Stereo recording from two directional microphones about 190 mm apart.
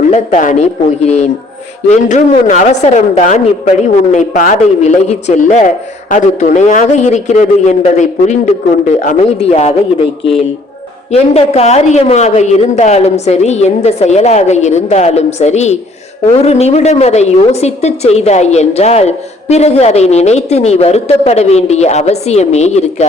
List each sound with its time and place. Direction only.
0.1 s a woman's voice: 40° left (ahead or behind)
11.1 s a woman's voice: 35° left (ahead or behind)